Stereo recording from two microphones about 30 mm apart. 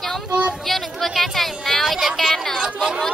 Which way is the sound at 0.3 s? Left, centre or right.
Right.